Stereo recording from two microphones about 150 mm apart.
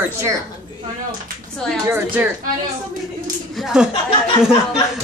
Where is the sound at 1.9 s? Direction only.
10° right (ahead or behind).